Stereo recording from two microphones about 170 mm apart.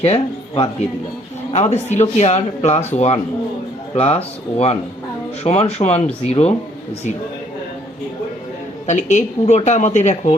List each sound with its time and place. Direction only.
0.0 s speech: 35° left (ahead or behind)
8.9 s speech: 45° left (ahead or behind)